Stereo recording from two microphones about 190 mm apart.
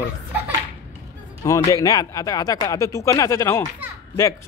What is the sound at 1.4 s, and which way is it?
Speech, 15° left (ahead or behind).